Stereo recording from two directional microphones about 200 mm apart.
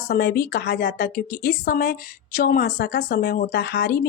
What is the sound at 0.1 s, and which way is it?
A woman's voice, 50° left (ahead or behind).